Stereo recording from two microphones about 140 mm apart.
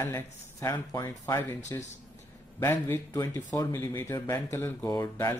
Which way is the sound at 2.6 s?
15° left (ahead or behind).